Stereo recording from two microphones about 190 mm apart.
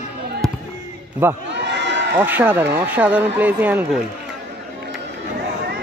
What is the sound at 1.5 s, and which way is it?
Run, 65° right (ahead or behind).